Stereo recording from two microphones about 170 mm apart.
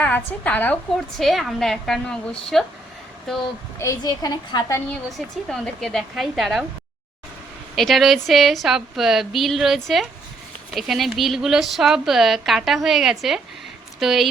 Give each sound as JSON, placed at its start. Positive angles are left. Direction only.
{"t": 0.0, "sound": "a woman's voice", "side_deg": 10}
{"t": 3.8, "sound": "a woman's voice", "side_deg": 20}
{"t": 4.9, "sound": "a woman's voice", "side_deg": 0}
{"t": 7.8, "sound": "a woman's voice", "side_deg": 0}